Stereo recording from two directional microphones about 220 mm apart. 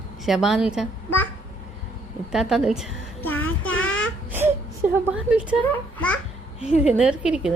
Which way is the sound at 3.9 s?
60° left (ahead or behind).